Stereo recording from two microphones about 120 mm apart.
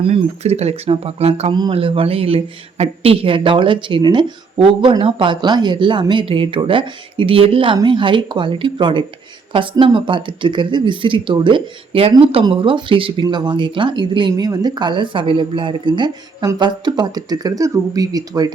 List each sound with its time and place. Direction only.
0.0 s a woman's voice: 60° right (ahead or behind); by 18.4 s 30° right (ahead or behind)